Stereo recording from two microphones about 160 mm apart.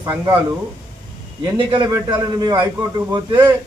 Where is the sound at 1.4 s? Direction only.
30° right (ahead or behind).